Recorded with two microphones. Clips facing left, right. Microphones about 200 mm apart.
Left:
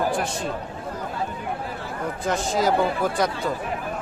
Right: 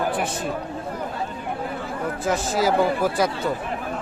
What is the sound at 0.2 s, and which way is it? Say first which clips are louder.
Speech: right 1 dB; centre (ahead or behind).